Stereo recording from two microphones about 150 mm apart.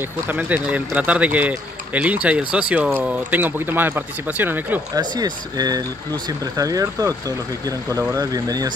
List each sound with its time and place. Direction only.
0.3 s speech: 10° right (ahead or behind)
4.9 s speech: 25° right (ahead or behind)